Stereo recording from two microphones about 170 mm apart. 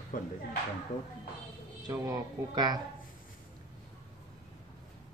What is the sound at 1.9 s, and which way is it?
Speech, 20° right (ahead or behind).